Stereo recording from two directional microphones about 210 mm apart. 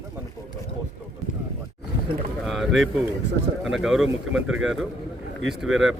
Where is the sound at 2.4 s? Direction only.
Centre (ahead or behind).